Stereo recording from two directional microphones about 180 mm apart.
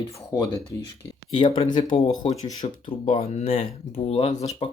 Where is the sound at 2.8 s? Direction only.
30° left (ahead or behind).